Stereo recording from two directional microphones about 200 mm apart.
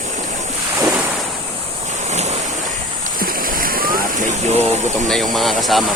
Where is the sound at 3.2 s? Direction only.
45° right (ahead or behind).